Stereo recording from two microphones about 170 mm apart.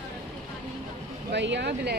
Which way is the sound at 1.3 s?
90° right.